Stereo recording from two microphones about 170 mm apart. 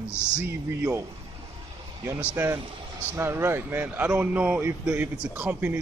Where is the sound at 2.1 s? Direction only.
15° right (ahead or behind).